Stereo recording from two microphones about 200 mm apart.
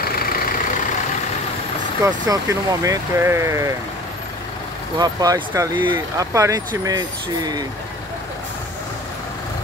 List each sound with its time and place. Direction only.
0.0 s vehicle: 45° left (ahead or behind)
2.0 s speech: 20° right (ahead or behind)
4.9 s speech: 20° right (ahead or behind)